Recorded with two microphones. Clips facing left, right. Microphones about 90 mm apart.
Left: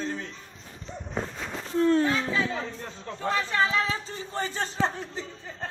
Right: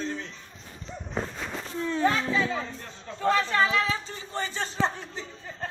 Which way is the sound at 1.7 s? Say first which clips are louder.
Left 9 dB; 55° left (ahead or behind).